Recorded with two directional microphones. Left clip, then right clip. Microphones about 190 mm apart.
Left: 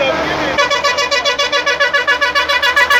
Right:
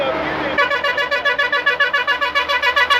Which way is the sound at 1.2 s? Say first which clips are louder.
Left 2 dB; 45° right (ahead or behind).